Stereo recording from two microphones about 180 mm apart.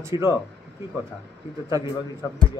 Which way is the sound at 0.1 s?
30° left (ahead or behind).